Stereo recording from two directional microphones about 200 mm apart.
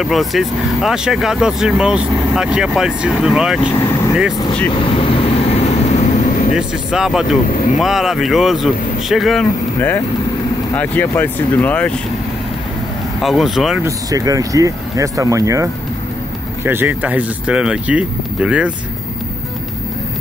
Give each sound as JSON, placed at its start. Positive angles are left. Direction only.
{"t": 0.0, "sound": "speech", "side_deg": 0}
{"t": 4.9, "sound": "vehicle", "side_deg": 30}
{"t": 6.5, "sound": "speech", "side_deg": -5}
{"t": 10.7, "sound": "speech", "side_deg": 10}
{"t": 13.2, "sound": "speech", "side_deg": 0}
{"t": 13.8, "sound": "speech", "side_deg": -15}